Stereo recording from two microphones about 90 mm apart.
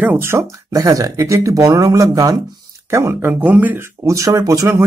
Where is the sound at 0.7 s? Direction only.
40° right (ahead or behind).